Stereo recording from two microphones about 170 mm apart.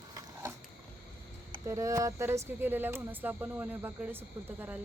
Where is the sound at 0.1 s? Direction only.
20° right (ahead or behind).